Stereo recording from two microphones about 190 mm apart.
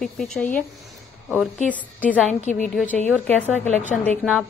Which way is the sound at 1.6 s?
10° left (ahead or behind).